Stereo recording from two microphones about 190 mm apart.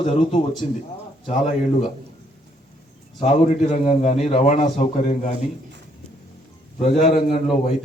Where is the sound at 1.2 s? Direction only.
35° left (ahead or behind).